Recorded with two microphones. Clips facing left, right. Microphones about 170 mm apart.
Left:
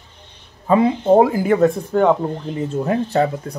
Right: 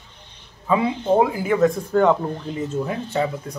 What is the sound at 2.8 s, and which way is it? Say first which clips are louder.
Speech: left 6 dB; 55° left (ahead or behind).